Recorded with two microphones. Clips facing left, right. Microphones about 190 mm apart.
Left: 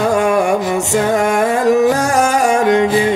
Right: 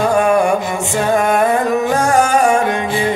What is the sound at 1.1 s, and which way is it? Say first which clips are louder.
Music: right 4 dB; 80° left.